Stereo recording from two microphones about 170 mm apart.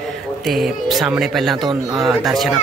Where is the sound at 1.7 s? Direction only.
25° right (ahead or behind).